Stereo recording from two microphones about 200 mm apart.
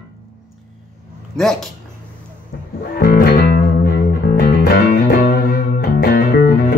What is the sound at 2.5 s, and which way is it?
Music, 50° left (ahead or behind).